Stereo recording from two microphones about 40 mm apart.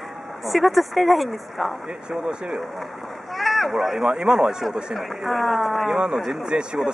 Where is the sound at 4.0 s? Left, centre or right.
Right.